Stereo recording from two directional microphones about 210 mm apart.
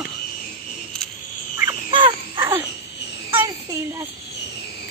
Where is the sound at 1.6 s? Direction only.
20° right (ahead or behind).